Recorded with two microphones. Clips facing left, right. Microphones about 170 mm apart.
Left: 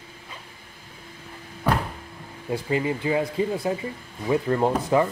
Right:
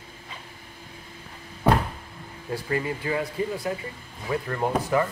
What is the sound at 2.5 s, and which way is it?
Speech, 20° left (ahead or behind).